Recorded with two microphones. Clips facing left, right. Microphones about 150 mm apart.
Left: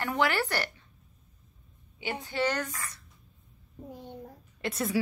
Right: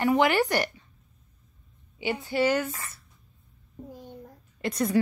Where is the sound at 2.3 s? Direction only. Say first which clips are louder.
Right 5 dB; 10° right (ahead or behind).